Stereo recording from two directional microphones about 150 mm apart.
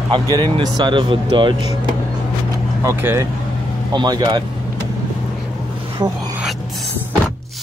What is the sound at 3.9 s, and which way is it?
Speech, 30° right (ahead or behind).